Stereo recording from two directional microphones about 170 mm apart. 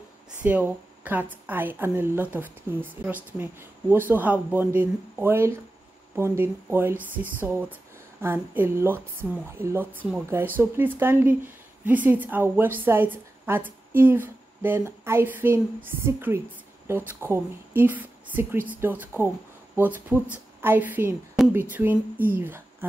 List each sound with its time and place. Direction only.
0.4 s a woman's voice: 10° right (ahead or behind)